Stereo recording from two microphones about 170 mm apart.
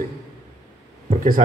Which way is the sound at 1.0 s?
55° right (ahead or behind).